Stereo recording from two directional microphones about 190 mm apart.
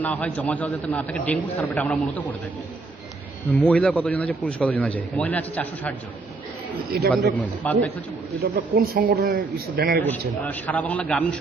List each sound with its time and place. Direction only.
0.0 s a man's voice: 10° left (ahead or behind)
3.6 s a man's voice: 5° left (ahead or behind)
6.9 s a man's voice: 55° right (ahead or behind)
7.3 s a man's voice: 10° left (ahead or behind)
8.5 s a man's voice: 50° right (ahead or behind)
10.0 s a man's voice: 10° left (ahead or behind)